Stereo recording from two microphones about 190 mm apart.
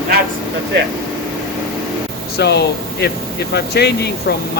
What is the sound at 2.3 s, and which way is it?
Speech, 60° left (ahead or behind).